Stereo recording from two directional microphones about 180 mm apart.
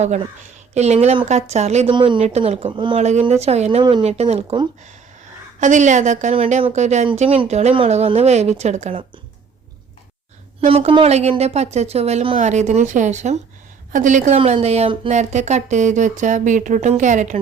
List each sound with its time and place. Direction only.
0.0 s speech: 40° right (ahead or behind)
10.7 s a woman's voice: 30° right (ahead or behind)